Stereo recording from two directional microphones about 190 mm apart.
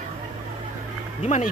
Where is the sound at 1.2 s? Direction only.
35° left (ahead or behind).